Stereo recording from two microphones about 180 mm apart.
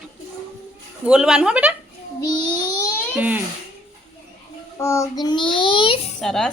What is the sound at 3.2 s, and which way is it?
Speech, 10° right (ahead or behind).